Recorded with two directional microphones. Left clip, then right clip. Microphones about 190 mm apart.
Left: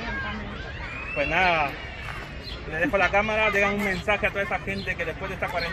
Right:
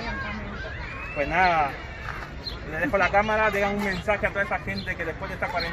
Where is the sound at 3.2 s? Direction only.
40° left (ahead or behind).